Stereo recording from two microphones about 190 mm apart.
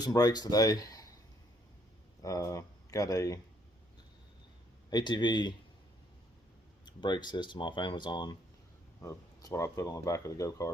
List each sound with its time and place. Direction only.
0.0 s speech: 20° left (ahead or behind)
2.2 s speech: 15° left (ahead or behind)
4.9 s speech: 25° left (ahead or behind)
6.8 s speech: 25° left (ahead or behind)